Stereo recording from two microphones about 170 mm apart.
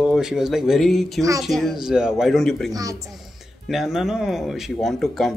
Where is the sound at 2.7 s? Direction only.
20° right (ahead or behind).